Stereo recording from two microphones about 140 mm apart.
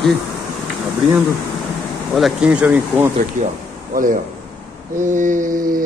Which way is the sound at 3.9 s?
70° right (ahead or behind).